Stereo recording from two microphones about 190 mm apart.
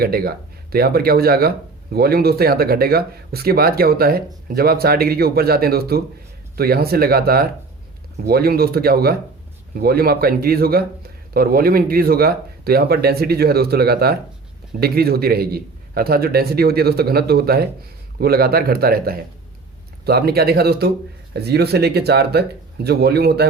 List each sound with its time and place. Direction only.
0.0 s a man's voice: 55° right (ahead or behind)